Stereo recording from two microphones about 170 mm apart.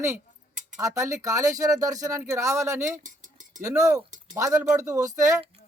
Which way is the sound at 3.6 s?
20° right (ahead or behind).